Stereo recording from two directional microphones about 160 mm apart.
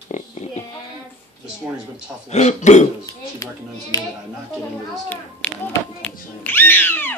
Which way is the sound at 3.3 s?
20° left (ahead or behind).